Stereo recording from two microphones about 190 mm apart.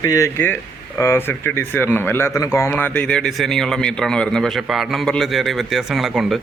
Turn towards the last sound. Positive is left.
turn(degrees=0)  # may be behind; listen again after turning